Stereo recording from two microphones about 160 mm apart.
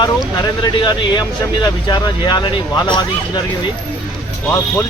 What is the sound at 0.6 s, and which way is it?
Speech, 30° left (ahead or behind).